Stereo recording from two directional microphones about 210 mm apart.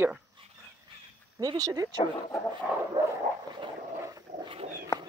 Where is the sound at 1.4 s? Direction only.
15° right (ahead or behind).